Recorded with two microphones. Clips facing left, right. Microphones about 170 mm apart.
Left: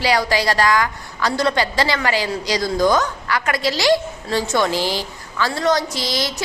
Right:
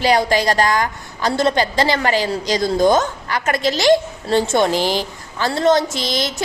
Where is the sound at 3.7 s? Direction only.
50° right (ahead or behind).